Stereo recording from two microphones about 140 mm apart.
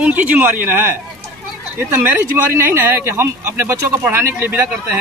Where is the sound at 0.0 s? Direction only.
10° right (ahead or behind).